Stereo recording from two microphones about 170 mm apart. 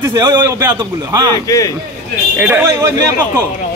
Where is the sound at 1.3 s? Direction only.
20° left (ahead or behind).